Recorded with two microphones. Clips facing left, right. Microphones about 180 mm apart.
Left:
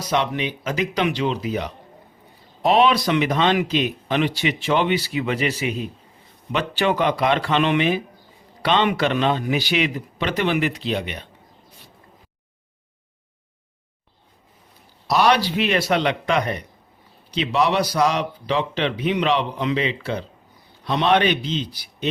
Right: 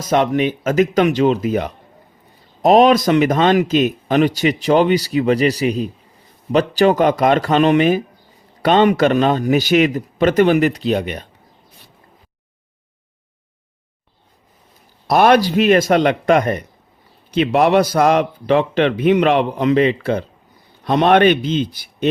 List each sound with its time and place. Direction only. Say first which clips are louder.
0.0 s speech: right 7 dB; 45° right (ahead or behind)
15.0 s speech: right 6 dB; 50° right (ahead or behind)